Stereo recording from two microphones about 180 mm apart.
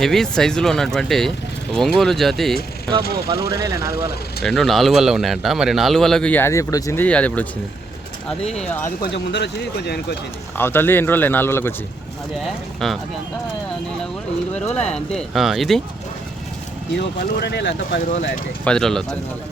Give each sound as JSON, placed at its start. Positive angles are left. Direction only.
{"t": 0.0, "sound": "a man's voice", "side_deg": 0}
{"t": 3.3, "sound": "speech", "side_deg": 60}
{"t": 3.6, "sound": "speech", "side_deg": -15}
{"t": 4.4, "sound": "a man's voice", "side_deg": 0}
{"t": 9.0, "sound": "speech", "side_deg": 70}
{"t": 10.6, "sound": "a man's voice", "side_deg": 10}
{"t": 12.8, "sound": "a man's voice", "side_deg": 0}
{"t": 14.8, "sound": "a man's voice", "side_deg": 5}
{"t": 17.4, "sound": "speech", "side_deg": 70}
{"t": 18.6, "sound": "a man's voice", "side_deg": 5}